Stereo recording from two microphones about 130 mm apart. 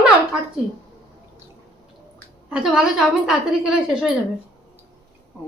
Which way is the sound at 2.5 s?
5° right (ahead or behind).